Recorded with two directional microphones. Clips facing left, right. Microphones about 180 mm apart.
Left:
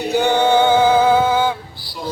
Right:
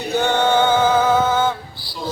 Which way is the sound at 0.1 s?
15° left (ahead or behind).